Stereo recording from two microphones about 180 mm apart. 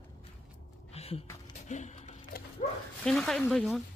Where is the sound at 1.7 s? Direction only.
40° left (ahead or behind).